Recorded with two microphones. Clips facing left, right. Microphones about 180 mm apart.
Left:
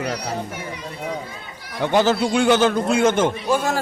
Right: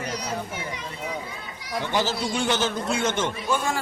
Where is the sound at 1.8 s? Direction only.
55° left (ahead or behind).